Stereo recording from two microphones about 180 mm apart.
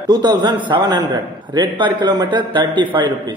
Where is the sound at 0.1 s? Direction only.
25° right (ahead or behind).